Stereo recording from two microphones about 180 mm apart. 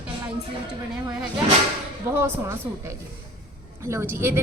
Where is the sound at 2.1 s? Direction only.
15° right (ahead or behind).